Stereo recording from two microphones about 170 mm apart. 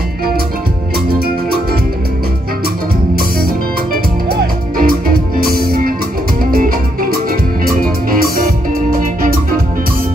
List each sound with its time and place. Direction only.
0.9 s music: 65° right (ahead or behind)
3.2 s music: 60° right (ahead or behind)